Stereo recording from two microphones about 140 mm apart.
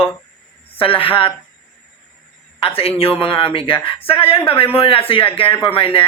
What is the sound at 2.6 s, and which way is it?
Speech, 40° left (ahead or behind).